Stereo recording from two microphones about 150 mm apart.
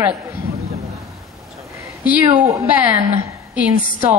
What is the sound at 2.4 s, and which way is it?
Speech, 20° right (ahead or behind).